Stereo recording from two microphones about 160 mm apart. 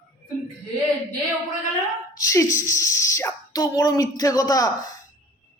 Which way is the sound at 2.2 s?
20° left (ahead or behind).